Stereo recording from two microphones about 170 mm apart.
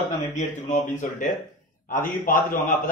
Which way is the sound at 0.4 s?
45° left (ahead or behind).